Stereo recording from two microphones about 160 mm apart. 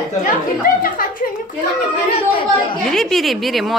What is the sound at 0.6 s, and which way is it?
Speech, 60° left (ahead or behind).